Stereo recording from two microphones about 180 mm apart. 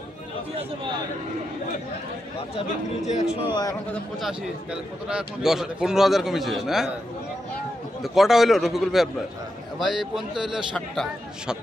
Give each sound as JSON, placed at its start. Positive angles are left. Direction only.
{"t": 0.6, "sound": "a man's voice", "side_deg": -25}
{"t": 2.5, "sound": "speech", "side_deg": 40}
{"t": 5.0, "sound": "a man's voice", "side_deg": -5}
{"t": 8.0, "sound": "a man's voice", "side_deg": 0}